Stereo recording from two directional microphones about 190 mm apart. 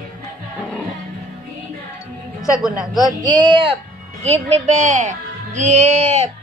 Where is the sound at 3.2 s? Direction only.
25° right (ahead or behind).